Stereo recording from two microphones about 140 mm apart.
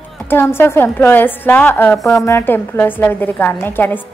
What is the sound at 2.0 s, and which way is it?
Speech, centre (ahead or behind).